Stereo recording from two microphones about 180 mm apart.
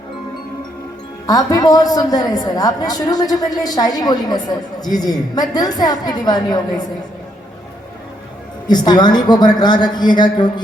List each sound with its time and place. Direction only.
1.3 s a woman's voice: 20° left (ahead or behind)
8.6 s a woman's voice: 25° left (ahead or behind)